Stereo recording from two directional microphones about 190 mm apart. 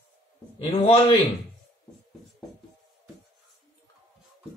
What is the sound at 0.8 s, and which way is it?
Speech, 30° left (ahead or behind).